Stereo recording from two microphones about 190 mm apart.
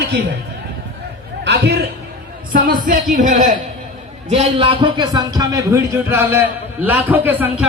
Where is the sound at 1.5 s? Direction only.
60° right (ahead or behind).